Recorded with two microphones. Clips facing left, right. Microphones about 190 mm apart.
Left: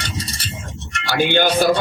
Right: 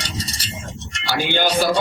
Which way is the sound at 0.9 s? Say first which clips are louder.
Left 4 dB; 55° left (ahead or behind).